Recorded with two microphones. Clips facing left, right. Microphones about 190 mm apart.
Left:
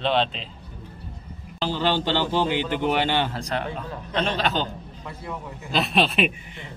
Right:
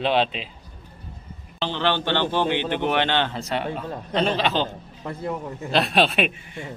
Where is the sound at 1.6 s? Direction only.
10° left (ahead or behind).